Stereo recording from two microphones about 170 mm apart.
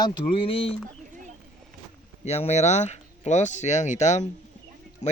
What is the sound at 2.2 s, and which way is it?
Speech, 40° left (ahead or behind).